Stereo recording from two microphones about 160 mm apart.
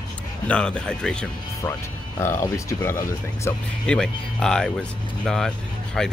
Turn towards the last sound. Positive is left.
turn(degrees=0)  # may be behind; listen again after turning